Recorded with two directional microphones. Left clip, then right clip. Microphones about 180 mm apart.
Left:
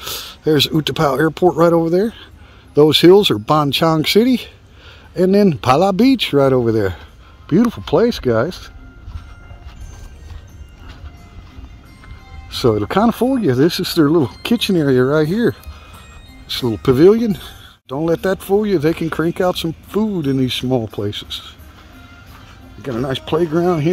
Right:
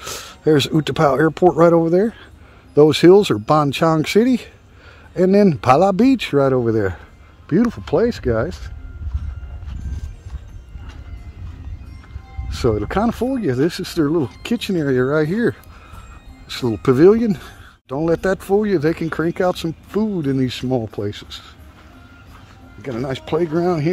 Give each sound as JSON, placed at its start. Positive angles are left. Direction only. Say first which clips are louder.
{"t": 0.0, "sound": "speech", "louder": "even", "side_deg": -10}
{"t": 12.4, "sound": "speech", "louder": "left 4 dB", "side_deg": 15}
{"t": 16.4, "sound": "speech", "louder": "left 2 dB", "side_deg": 0}
{"t": 22.8, "sound": "speech", "louder": "left 3 dB", "side_deg": 15}